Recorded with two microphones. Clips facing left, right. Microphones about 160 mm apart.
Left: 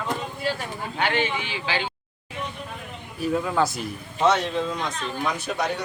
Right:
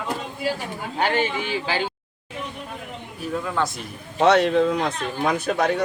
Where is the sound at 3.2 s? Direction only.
5° left (ahead or behind).